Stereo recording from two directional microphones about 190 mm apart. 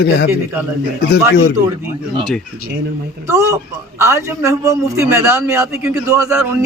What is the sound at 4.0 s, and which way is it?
A man's voice, 15° right (ahead or behind).